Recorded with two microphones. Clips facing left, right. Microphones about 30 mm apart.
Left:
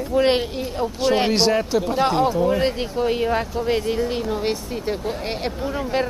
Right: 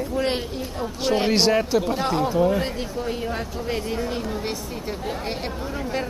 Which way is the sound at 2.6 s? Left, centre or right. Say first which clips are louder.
Left 6 dB; left.